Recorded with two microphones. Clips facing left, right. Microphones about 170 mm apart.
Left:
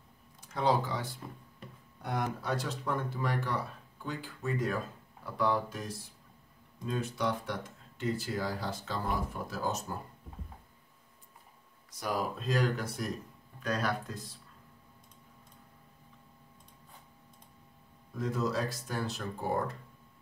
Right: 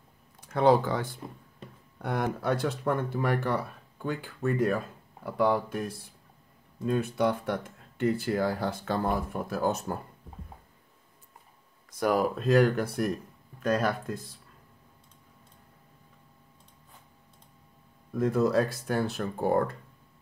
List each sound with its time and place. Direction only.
0.4 s speech: 60° right (ahead or behind)
11.9 s speech: 55° right (ahead or behind)
18.1 s speech: 55° right (ahead or behind)